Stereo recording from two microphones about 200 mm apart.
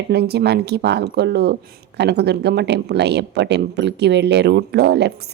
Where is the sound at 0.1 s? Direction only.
55° right (ahead or behind).